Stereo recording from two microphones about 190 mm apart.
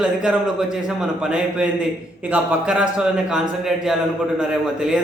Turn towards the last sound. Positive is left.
turn(degrees=-5)  # may be behind; listen again after turning